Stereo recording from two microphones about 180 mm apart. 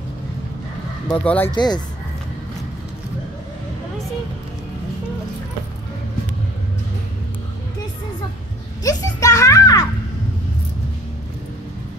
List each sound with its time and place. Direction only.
1.1 s speech: 10° left (ahead or behind)
1.5 s speech: 25° left (ahead or behind)
8.8 s a sound: 20° left (ahead or behind)